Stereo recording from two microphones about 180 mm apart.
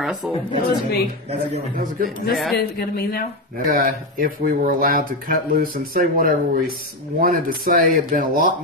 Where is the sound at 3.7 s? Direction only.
50° right (ahead or behind).